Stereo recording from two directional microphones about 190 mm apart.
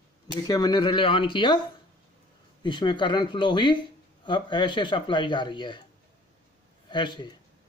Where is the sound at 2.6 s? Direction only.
25° left (ahead or behind).